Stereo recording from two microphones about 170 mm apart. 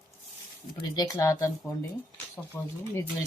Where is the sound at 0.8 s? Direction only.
25° left (ahead or behind).